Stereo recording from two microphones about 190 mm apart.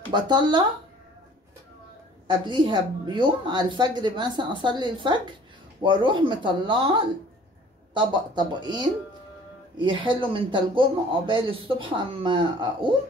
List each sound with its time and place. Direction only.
0.1 s speech: 25° right (ahead or behind)
2.2 s speech: 25° right (ahead or behind)